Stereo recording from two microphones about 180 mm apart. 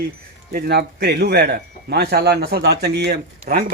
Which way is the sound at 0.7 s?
65° right (ahead or behind).